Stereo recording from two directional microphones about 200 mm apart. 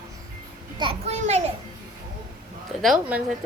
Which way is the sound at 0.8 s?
30° right (ahead or behind).